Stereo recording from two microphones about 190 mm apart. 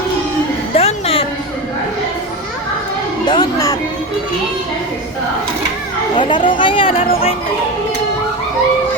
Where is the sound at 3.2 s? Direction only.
20° left (ahead or behind).